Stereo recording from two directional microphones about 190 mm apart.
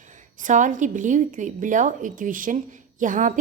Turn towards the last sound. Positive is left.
turn(degrees=-40)  # may be behind; listen again after turning